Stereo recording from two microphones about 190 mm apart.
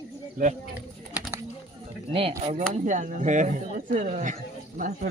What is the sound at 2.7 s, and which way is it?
Speech, 40° right (ahead or behind).